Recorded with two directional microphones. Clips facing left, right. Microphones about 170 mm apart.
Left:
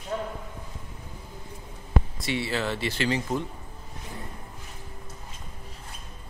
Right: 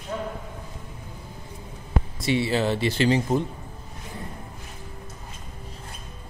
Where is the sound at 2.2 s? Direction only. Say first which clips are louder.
Right 9 dB; 20° right (ahead or behind).